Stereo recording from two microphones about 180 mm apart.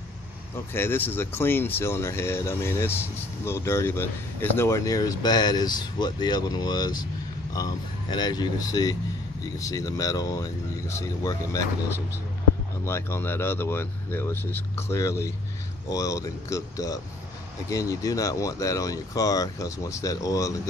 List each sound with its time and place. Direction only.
0.7 s speech: 10° left (ahead or behind)
12.8 s speech: 15° left (ahead or behind)